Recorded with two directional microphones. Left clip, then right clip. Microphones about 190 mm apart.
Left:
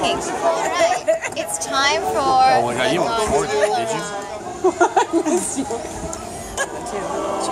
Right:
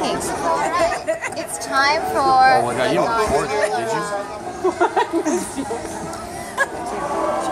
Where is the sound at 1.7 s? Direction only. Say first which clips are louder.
Right 1 dB; 20° right (ahead or behind).